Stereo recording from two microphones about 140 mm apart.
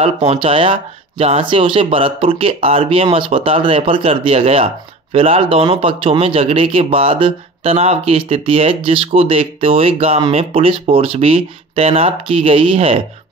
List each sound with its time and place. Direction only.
0.0 s speech: 45° right (ahead or behind)